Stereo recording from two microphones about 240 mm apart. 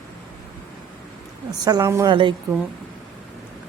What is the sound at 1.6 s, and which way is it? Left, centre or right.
Speech, centre.